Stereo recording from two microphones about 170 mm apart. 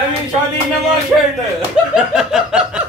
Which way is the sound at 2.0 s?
5° right (ahead or behind).